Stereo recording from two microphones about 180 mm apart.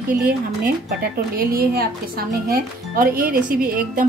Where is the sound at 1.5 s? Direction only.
55° right (ahead or behind).